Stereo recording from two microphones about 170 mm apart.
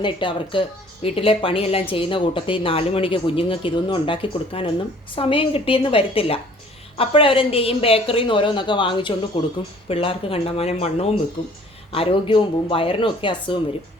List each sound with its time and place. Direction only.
0.0 s speech: 30° left (ahead or behind)